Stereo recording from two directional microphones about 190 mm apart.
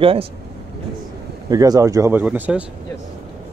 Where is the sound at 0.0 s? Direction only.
30° right (ahead or behind).